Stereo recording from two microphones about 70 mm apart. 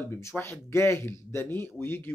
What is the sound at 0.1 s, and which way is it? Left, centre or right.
A man's voice, left.